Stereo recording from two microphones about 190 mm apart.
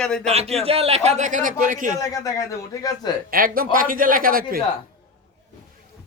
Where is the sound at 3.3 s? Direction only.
50° right (ahead or behind).